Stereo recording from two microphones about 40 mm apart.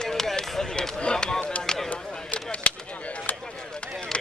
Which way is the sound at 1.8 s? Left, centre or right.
Left.